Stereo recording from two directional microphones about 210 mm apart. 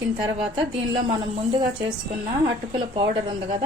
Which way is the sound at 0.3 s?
25° right (ahead or behind).